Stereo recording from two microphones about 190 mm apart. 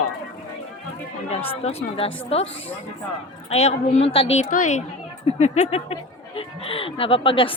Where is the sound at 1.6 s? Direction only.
30° left (ahead or behind).